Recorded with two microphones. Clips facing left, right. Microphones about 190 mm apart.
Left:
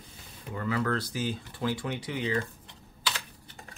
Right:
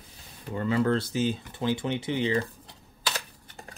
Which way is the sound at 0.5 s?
25° right (ahead or behind).